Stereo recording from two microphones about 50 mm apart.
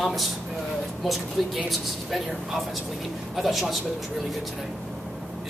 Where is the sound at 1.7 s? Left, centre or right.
Centre.